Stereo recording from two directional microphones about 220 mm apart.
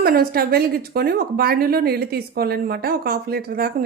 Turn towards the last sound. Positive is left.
turn(degrees=-40)  # may be behind; listen again after turning